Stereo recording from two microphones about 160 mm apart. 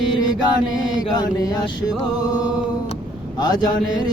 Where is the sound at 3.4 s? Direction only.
25° left (ahead or behind).